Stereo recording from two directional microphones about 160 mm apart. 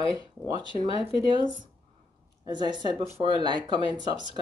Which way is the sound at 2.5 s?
30° right (ahead or behind).